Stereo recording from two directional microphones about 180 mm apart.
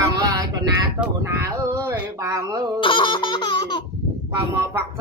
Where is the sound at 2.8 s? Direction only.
25° left (ahead or behind).